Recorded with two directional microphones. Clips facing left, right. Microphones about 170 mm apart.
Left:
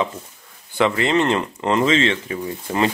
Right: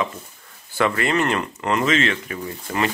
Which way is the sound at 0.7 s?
20° left (ahead or behind).